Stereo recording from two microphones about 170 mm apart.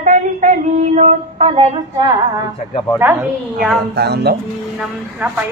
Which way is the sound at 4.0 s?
75° right (ahead or behind).